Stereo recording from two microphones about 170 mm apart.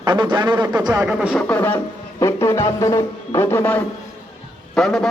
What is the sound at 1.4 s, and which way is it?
A woman's voice, 10° left (ahead or behind).